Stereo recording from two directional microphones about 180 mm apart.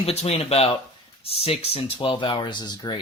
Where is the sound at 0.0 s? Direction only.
35° left (ahead or behind).